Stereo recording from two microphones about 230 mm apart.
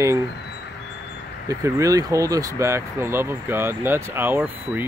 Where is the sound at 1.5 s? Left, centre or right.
Centre.